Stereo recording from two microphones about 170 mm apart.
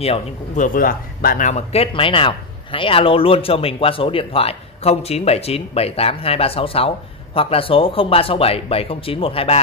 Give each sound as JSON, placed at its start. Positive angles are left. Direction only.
{"t": 0.0, "sound": "speech", "side_deg": 35}
{"t": 0.7, "sound": "speech", "side_deg": 55}